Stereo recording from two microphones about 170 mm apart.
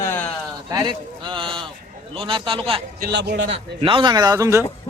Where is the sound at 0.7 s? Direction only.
25° right (ahead or behind).